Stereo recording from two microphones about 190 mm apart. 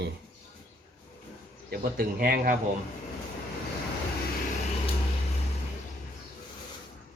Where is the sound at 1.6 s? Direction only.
50° right (ahead or behind).